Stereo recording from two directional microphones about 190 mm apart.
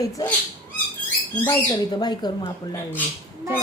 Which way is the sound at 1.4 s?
20° left (ahead or behind).